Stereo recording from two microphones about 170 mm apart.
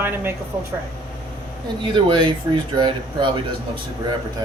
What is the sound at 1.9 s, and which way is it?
Speech, 30° right (ahead or behind).